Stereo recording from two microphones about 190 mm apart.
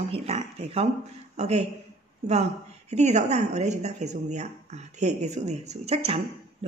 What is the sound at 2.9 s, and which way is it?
A woman's voice, 35° right (ahead or behind).